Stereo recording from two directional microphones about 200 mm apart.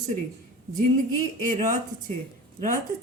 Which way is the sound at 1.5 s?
40° right (ahead or behind).